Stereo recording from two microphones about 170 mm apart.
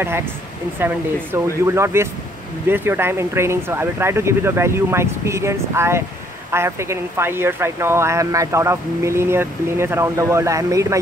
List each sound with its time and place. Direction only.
0.7 s speech: 10° right (ahead or behind)